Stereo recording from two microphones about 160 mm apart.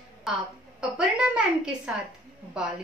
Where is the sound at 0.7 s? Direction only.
5° right (ahead or behind).